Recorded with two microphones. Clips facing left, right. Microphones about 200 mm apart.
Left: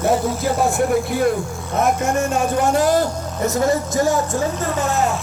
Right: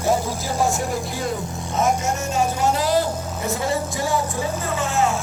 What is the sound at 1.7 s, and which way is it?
Speech, 55° left (ahead or behind).